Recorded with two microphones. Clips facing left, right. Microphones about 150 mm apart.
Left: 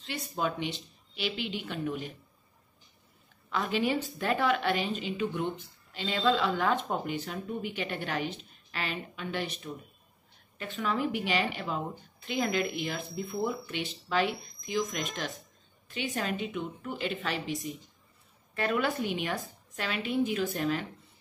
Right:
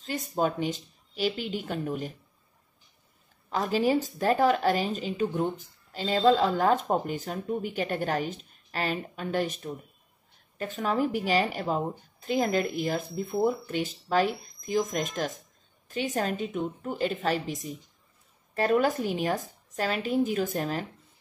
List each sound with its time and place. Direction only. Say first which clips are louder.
0.0 s speech: right 5 dB; 40° right (ahead or behind)
3.4 s a woman's voice: right 4 dB; 40° right (ahead or behind)